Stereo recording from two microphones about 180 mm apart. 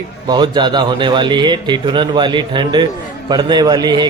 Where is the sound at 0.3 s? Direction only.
25° right (ahead or behind).